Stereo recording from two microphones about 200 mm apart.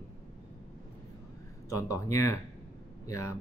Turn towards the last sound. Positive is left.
turn(degrees=15)  # may be behind; listen again after turning